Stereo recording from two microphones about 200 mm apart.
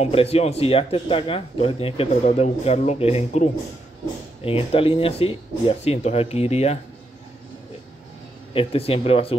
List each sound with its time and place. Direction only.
0.0 s speech: 30° left (ahead or behind)
4.5 s speech: 30° left (ahead or behind)
8.5 s speech: 30° left (ahead or behind)